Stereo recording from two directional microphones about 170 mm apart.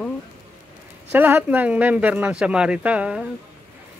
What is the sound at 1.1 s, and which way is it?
Speech, 10° right (ahead or behind).